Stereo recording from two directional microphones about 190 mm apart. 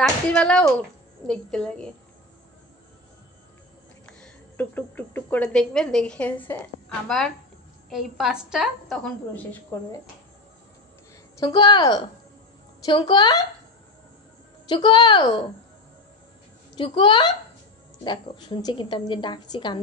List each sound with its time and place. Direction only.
0.0 s a woman's voice: 5° left (ahead or behind)
4.0 s a woman's voice: 5° left (ahead or behind)
11.3 s a woman's voice: 20° left (ahead or behind)
14.7 s a woman's voice: 25° left (ahead or behind)
16.7 s a woman's voice: 25° left (ahead or behind)